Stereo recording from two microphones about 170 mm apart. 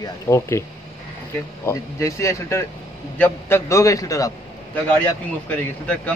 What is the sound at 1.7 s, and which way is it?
Speech, 15° left (ahead or behind).